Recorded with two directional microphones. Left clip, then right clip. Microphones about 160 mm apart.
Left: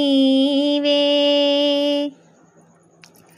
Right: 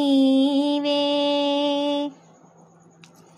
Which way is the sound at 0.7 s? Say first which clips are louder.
Left 5 dB; 10° left (ahead or behind).